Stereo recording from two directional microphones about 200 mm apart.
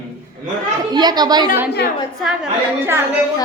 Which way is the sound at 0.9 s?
20° right (ahead or behind).